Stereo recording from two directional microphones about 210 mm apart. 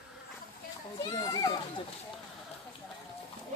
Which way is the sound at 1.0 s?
20° left (ahead or behind).